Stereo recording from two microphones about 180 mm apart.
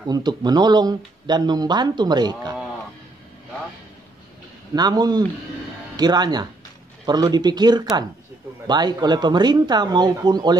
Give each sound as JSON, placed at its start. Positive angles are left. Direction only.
{"t": 0.0, "sound": "speech", "side_deg": -25}
{"t": 4.7, "sound": "speech", "side_deg": -20}